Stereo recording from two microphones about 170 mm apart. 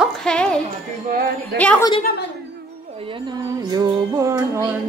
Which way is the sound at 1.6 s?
10° left (ahead or behind).